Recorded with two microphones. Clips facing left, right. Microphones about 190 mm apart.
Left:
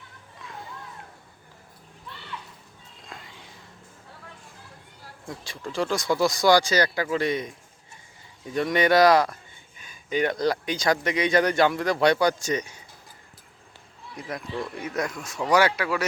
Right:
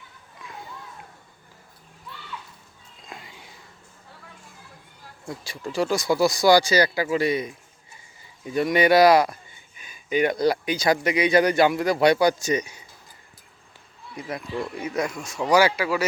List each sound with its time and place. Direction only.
3.1 s sniff: 10° right (ahead or behind)
5.4 s speech: 10° right (ahead or behind)
8.5 s speech: 10° right (ahead or behind)
14.3 s speech: 5° right (ahead or behind)